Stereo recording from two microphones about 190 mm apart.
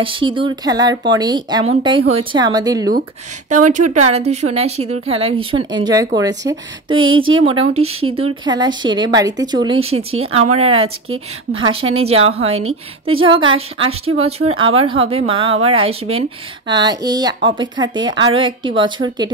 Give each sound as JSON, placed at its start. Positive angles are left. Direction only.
{"t": 0.0, "sound": "speech", "side_deg": -25}
{"t": 3.7, "sound": "speech", "side_deg": -35}